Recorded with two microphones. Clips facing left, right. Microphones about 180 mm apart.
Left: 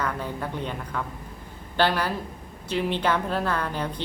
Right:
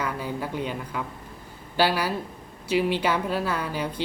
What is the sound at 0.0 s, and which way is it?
A woman's voice, 5° right (ahead or behind).